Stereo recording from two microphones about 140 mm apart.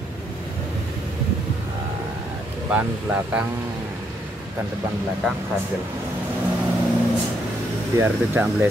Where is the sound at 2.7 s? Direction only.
10° right (ahead or behind).